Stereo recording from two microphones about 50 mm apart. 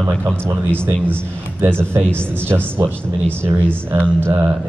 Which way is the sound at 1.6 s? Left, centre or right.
Right.